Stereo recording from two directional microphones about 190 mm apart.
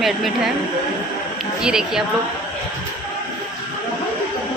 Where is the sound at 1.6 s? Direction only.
5° right (ahead or behind).